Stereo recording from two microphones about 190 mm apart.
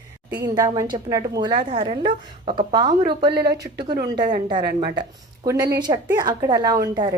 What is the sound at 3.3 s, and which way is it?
Music, 60° right (ahead or behind).